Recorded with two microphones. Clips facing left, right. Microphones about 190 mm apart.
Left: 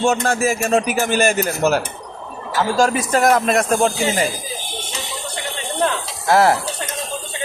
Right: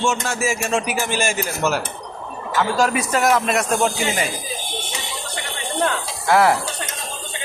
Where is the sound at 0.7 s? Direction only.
35° left (ahead or behind).